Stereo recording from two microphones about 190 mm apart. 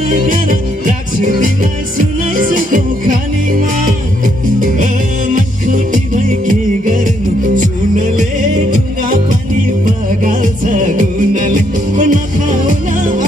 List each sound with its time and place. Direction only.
0.1 s music: 45° right (ahead or behind)
4.6 s music: 45° right (ahead or behind)
8.6 s music: 45° right (ahead or behind)